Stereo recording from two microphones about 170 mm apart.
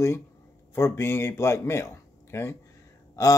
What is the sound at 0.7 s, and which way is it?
Speech, 15° left (ahead or behind).